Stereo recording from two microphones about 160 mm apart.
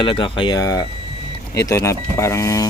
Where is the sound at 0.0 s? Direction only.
30° left (ahead or behind).